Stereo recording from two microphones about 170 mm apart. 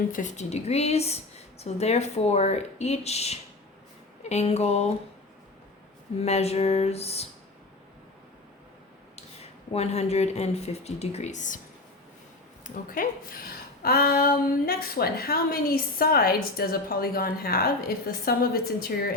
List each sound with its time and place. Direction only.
0.1 s a woman's voice: 45° left (ahead or behind)
6.2 s a woman's voice: 40° left (ahead or behind)
9.7 s a woman's voice: 40° left (ahead or behind)
12.6 s a woman's voice: 50° left (ahead or behind)